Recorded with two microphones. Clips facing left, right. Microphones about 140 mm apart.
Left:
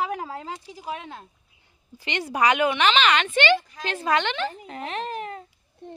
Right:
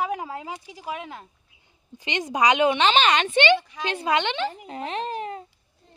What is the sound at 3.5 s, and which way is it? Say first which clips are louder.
A woman's voice: right 1 dB; 15° right (ahead or behind).